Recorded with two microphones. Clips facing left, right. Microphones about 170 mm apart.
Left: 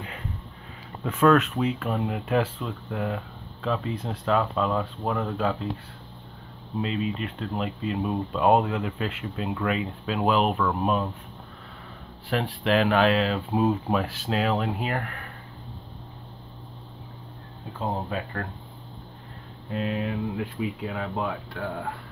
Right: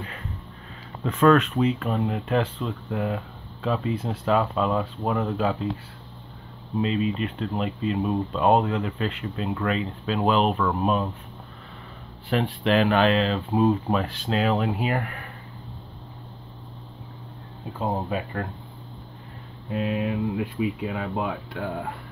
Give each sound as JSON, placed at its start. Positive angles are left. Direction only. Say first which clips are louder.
{"t": 1.0, "sound": "speech", "louder": "right 1 dB", "side_deg": 5}
{"t": 6.8, "sound": "speech", "louder": "right 4 dB", "side_deg": 0}
{"t": 12.3, "sound": "speech", "louder": "right 2 dB", "side_deg": 0}
{"t": 17.7, "sound": "speech", "louder": "right 2 dB", "side_deg": -10}
{"t": 19.7, "sound": "speech", "louder": "right 2 dB", "side_deg": -10}